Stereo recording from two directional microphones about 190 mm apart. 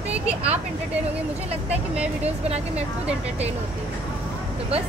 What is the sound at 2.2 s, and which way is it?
Speech, 35° right (ahead or behind).